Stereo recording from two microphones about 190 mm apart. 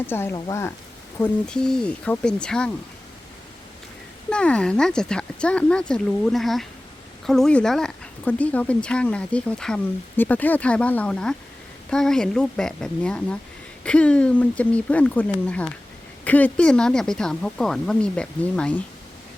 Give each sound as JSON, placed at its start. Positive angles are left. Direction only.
{"t": 0.1, "sound": "speech", "side_deg": 10}
{"t": 1.2, "sound": "speech", "side_deg": 5}
{"t": 4.3, "sound": "speech", "side_deg": 5}